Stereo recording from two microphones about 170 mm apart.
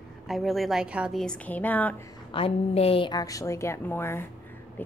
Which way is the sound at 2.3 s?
35° left (ahead or behind).